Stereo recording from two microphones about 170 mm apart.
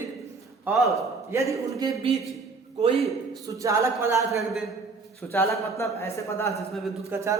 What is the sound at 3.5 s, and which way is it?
Speech, 20° right (ahead or behind).